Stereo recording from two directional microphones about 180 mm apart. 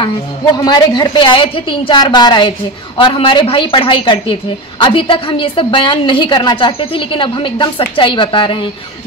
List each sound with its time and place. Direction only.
0.7 s a woman's voice: 25° left (ahead or behind)